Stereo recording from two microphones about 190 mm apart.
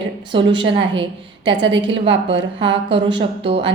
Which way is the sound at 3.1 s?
25° right (ahead or behind).